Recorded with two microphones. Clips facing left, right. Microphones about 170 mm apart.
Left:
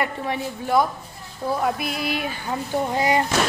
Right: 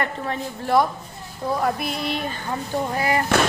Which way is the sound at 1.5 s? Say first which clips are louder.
Even; centre (ahead or behind).